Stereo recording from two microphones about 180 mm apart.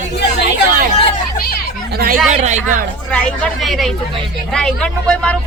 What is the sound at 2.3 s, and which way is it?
Speech, 40° right (ahead or behind).